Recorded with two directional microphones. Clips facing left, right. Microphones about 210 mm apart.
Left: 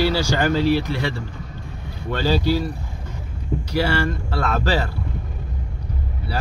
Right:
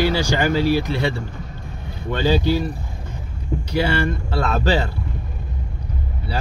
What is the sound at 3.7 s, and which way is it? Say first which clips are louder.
Speech: right 1 dB; 20° right (ahead or behind).